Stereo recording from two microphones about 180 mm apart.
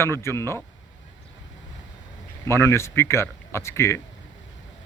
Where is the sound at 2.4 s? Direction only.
15° left (ahead or behind).